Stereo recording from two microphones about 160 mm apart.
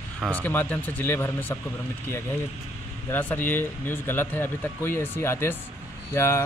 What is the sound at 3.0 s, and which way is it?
Speech, 10° left (ahead or behind).